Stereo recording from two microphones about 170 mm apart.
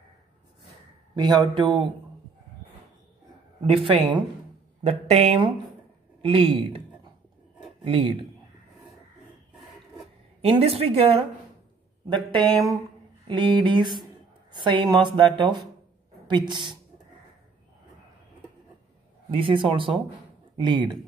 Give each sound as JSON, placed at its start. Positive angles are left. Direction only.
{"t": 1.1, "sound": "a woman's voice", "side_deg": -25}
{"t": 3.6, "sound": "speech", "side_deg": -30}
{"t": 7.8, "sound": "speech", "side_deg": -30}
{"t": 10.4, "sound": "a woman's voice", "side_deg": -35}
{"t": 19.3, "sound": "a woman's voice", "side_deg": -30}